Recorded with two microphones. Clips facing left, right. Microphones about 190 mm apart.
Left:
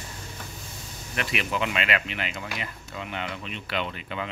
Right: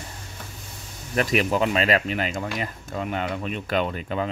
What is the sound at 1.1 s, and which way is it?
Speech, 40° right (ahead or behind).